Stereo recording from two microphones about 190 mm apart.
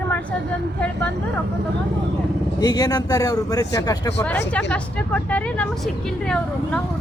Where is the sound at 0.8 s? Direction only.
5° left (ahead or behind).